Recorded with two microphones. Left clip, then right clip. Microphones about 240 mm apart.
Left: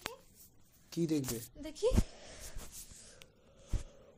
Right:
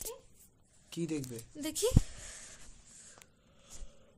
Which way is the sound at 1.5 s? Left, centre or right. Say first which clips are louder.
Right 7 dB; right.